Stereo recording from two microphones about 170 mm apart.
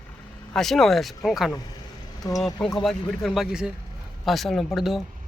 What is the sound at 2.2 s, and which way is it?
Speech, 25° left (ahead or behind).